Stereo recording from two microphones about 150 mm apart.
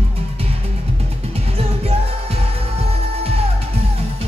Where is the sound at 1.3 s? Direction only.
40° right (ahead or behind).